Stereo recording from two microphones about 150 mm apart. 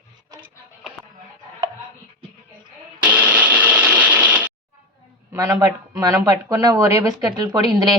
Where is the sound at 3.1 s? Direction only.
10° right (ahead or behind).